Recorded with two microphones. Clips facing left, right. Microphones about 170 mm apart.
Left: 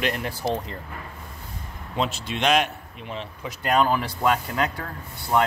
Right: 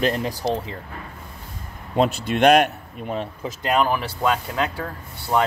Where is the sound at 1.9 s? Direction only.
50° right (ahead or behind).